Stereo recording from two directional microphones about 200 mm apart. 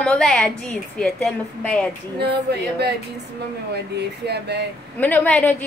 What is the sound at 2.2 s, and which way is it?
Speech, 55° right (ahead or behind).